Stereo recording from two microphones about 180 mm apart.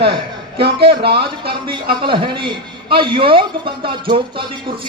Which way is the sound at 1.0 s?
65° right (ahead or behind).